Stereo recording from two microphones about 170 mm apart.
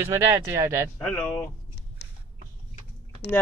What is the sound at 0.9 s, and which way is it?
Speech, 5° left (ahead or behind).